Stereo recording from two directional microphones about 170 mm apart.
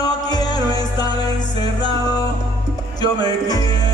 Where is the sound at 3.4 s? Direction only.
20° left (ahead or behind).